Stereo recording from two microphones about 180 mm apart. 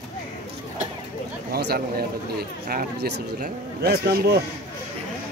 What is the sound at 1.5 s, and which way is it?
Speech, 60° right (ahead or behind).